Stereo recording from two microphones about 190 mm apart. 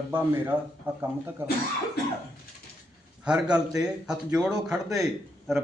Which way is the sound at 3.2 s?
5° right (ahead or behind).